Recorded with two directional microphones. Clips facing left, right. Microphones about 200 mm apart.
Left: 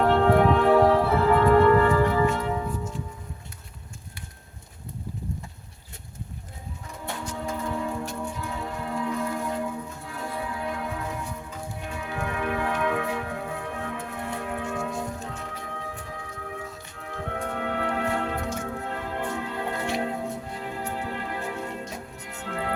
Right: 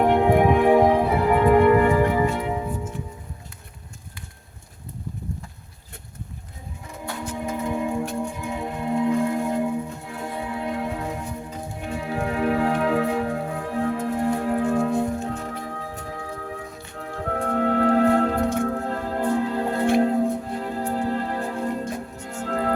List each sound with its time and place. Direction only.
0.0 s music: 15° right (ahead or behind)
7.3 s music: 15° right (ahead or behind); by 18.5 s 35° right (ahead or behind)
18.5 s music: 55° right (ahead or behind)
18.8 s music: 35° right (ahead or behind)